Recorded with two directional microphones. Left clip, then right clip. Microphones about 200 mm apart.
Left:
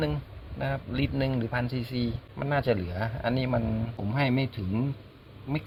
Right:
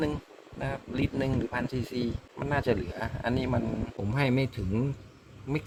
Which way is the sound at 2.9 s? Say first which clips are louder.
Left 2 dB; 15° right (ahead or behind).